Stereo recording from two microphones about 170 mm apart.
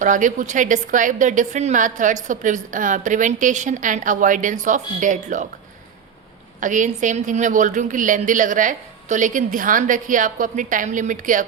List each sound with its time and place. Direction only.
0.0 s a woman's voice: 50° right (ahead or behind)
6.6 s a woman's voice: 50° right (ahead or behind)